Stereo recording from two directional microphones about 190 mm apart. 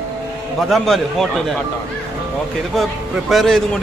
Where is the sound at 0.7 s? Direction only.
Centre (ahead or behind).